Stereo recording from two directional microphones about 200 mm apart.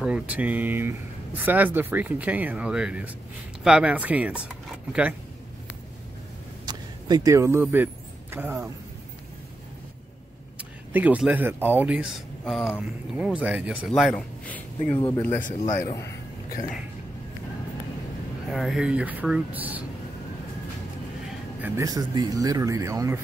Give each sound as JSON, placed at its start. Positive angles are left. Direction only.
{"t": 0.0, "sound": "a man's voice", "side_deg": -5}
{"t": 6.6, "sound": "a sound", "side_deg": -20}
{"t": 10.9, "sound": "a man's voice", "side_deg": -10}
{"t": 15.3, "sound": "a man's voice", "side_deg": 40}
{"t": 15.8, "sound": "a man's voice", "side_deg": 15}
{"t": 18.5, "sound": "a man's voice", "side_deg": 0}
{"t": 21.5, "sound": "speech", "side_deg": -10}